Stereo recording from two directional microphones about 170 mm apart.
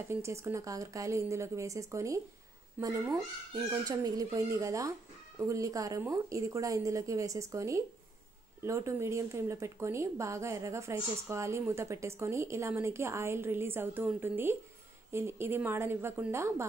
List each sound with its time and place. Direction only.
0.1 s speech: 15° right (ahead or behind)